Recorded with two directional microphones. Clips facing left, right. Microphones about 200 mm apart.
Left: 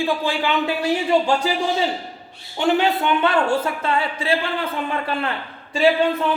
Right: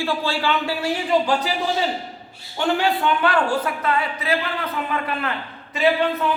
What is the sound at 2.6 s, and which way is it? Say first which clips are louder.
Speech: left 2 dB; 20° left (ahead or behind).